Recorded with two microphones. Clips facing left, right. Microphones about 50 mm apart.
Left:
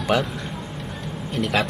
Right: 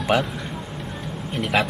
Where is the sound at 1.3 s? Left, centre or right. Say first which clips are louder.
Right 1 dB; centre.